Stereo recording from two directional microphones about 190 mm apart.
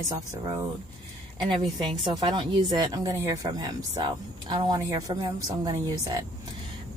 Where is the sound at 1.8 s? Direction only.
25° right (ahead or behind).